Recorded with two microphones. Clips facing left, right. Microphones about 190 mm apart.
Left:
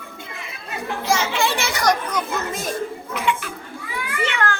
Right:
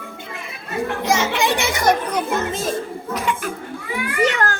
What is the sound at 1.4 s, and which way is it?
Children playing, 20° right (ahead or behind).